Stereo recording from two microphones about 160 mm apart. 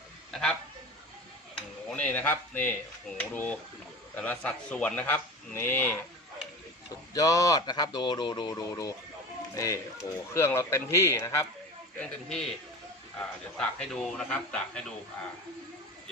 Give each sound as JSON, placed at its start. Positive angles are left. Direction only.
{"t": 0.3, "sound": "a man's voice", "side_deg": 5}
{"t": 1.5, "sound": "a sound", "side_deg": 5}
{"t": 3.2, "sound": "a man's voice", "side_deg": 10}
{"t": 7.1, "sound": "a man's voice", "side_deg": 20}
{"t": 11.9, "sound": "a man's voice", "side_deg": 5}
{"t": 13.6, "sound": "a man's voice", "side_deg": 5}